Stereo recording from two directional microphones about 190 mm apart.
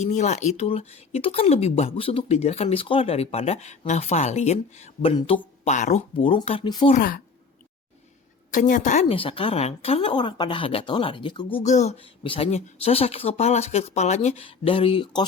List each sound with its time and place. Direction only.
0.0 s a woman's voice: 40° left (ahead or behind)
6.9 s a woman's voice: 45° left (ahead or behind)
8.4 s a woman's voice: 45° left (ahead or behind); by 15.2 s 25° left (ahead or behind)